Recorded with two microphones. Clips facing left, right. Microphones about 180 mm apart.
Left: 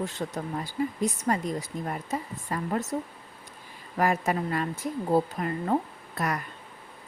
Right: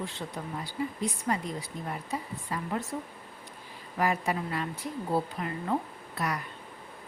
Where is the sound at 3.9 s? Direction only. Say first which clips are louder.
Left 3 dB; 45° left (ahead or behind).